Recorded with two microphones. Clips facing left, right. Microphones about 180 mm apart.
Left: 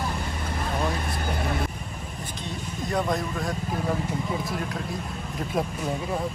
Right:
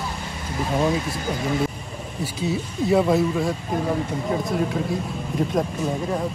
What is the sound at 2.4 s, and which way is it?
Speech, 5° right (ahead or behind).